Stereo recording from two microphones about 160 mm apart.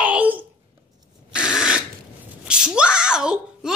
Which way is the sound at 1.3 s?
5° right (ahead or behind).